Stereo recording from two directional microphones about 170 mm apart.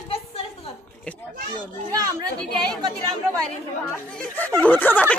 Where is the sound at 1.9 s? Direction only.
20° right (ahead or behind).